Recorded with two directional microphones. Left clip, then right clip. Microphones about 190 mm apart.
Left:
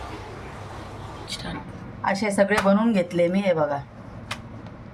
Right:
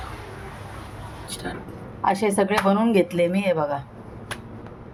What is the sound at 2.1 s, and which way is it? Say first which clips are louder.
Speech: right 1 dB; 45° right (ahead or behind).